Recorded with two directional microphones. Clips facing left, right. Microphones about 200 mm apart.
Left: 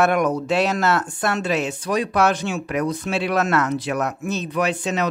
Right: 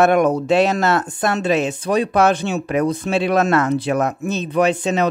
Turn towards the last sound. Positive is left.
turn(degrees=-25)  # may be behind; listen again after turning